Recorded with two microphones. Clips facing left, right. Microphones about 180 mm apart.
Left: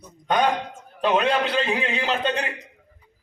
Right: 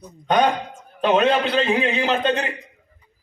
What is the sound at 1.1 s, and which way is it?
A man's voice, 20° right (ahead or behind).